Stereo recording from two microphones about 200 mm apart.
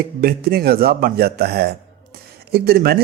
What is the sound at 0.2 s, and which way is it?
A man's voice, 50° right (ahead or behind).